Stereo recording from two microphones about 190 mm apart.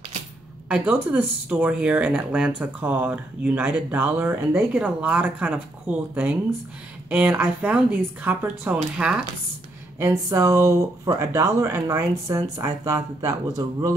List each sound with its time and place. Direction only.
0.7 s speech: 10° right (ahead or behind)